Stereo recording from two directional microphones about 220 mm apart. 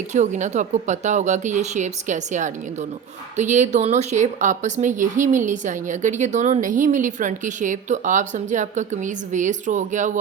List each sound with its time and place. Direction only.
0.1 s a woman's voice: 35° right (ahead or behind)